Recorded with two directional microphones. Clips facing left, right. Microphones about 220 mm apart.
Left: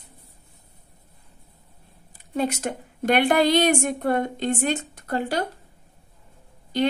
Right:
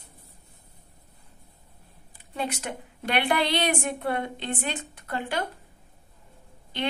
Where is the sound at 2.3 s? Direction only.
45° left (ahead or behind).